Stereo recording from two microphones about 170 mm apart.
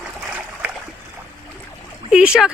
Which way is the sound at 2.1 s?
5° right (ahead or behind).